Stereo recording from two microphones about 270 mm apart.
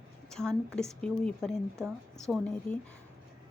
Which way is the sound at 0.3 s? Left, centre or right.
Centre.